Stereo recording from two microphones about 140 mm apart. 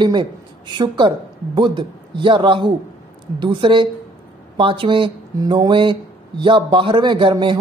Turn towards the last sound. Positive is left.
turn(degrees=-35)  # may be behind; listen again after turning